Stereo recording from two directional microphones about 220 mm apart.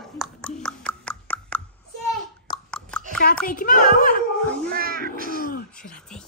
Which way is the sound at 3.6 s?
40° left (ahead or behind).